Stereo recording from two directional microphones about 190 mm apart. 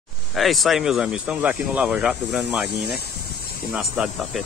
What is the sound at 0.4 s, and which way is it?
Speech, centre (ahead or behind).